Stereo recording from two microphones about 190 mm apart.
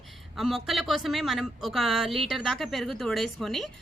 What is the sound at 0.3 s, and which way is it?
A woman's voice, centre (ahead or behind).